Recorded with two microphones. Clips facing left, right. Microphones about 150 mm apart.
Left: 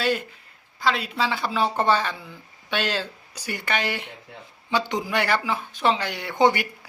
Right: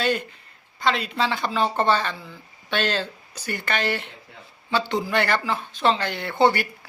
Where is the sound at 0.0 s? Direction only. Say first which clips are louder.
Right 1 dB; 5° left (ahead or behind).